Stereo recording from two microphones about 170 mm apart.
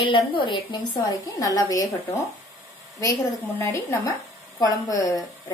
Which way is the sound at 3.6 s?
15° left (ahead or behind).